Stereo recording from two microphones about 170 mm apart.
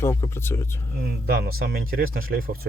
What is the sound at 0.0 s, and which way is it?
Speech, 15° left (ahead or behind).